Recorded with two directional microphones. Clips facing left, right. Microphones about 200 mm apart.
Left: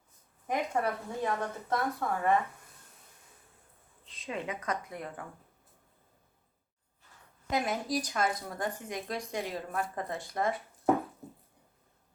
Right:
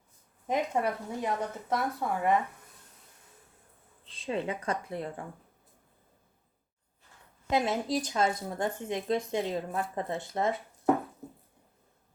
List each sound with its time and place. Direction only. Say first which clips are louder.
0.4 s speech: right 2 dB; 20° right (ahead or behind)
4.1 s speech: right 5 dB; 30° right (ahead or behind)
7.5 s speech: right 3 dB; 25° right (ahead or behind)
11.2 s a sound: right 2 dB; centre (ahead or behind)